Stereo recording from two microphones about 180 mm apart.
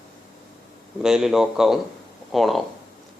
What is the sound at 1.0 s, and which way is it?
Speech, 5° right (ahead or behind).